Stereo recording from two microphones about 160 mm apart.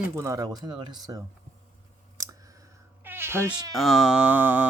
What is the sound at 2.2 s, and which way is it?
Clicking, 20° right (ahead or behind).